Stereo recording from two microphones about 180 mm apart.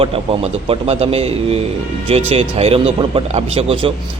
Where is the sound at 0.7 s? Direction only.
35° right (ahead or behind).